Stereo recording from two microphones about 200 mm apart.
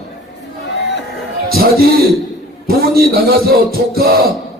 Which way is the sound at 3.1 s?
50° right (ahead or behind).